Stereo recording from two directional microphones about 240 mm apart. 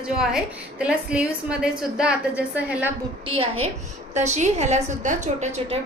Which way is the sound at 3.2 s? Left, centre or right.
Right.